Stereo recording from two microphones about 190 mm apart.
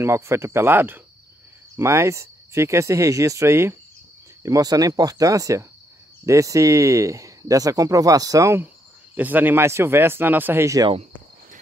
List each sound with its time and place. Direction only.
0.0 s speech: 15° right (ahead or behind)